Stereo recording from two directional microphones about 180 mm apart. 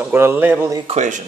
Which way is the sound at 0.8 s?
40° right (ahead or behind).